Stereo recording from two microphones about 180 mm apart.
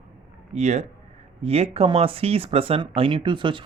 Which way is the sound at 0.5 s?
40° right (ahead or behind).